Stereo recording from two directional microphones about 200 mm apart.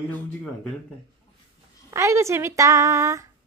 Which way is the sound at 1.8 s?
15° right (ahead or behind).